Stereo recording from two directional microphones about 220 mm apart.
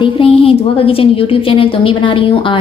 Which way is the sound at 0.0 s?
25° left (ahead or behind).